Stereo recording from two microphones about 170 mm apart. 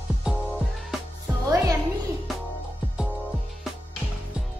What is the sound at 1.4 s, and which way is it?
Music, 20° right (ahead or behind).